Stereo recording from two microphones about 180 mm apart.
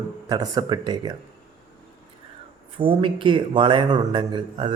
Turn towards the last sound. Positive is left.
turn(degrees=-25)  # may be behind; listen again after turning